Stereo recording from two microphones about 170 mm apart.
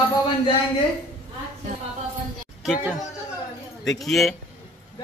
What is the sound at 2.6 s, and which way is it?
Speech, 5° right (ahead or behind).